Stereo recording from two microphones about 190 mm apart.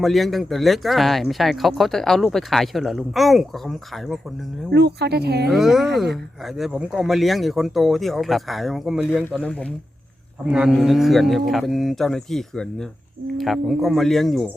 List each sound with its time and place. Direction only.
0.0 s speech: centre (ahead or behind)
4.7 s speech: 60° right (ahead or behind)
5.5 s speech: centre (ahead or behind)